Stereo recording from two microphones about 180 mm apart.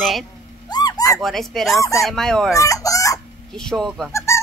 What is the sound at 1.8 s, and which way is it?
Speech, 15° left (ahead or behind).